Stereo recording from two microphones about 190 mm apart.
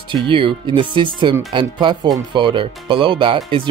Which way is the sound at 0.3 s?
25° right (ahead or behind).